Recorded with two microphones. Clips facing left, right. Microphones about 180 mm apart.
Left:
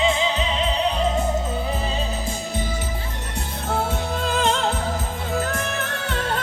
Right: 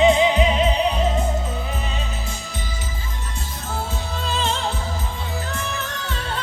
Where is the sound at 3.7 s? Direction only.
60° left (ahead or behind).